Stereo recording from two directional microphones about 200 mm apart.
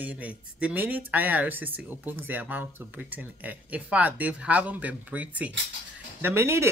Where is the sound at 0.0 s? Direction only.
10° right (ahead or behind).